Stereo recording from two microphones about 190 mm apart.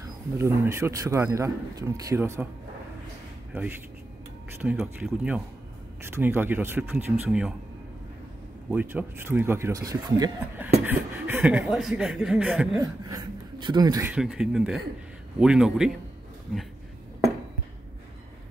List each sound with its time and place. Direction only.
0.0 s a man's voice: 15° right (ahead or behind)
4.6 s a man's voice: 10° right (ahead or behind)
8.6 s a man's voice: 10° right (ahead or behind)
12.7 s speech: 20° right (ahead or behind)
14.1 s speech: 5° right (ahead or behind)